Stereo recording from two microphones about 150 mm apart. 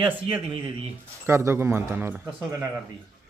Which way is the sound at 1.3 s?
15° right (ahead or behind).